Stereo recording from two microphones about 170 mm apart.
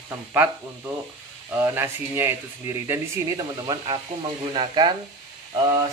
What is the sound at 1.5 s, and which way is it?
Speech, 15° right (ahead or behind).